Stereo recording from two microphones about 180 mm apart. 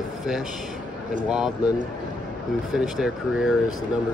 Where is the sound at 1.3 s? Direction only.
5° right (ahead or behind).